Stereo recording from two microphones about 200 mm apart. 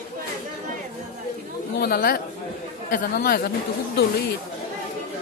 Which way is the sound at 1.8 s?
50° left (ahead or behind).